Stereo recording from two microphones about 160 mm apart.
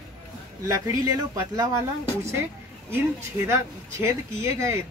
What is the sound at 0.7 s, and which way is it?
Speech, 20° right (ahead or behind).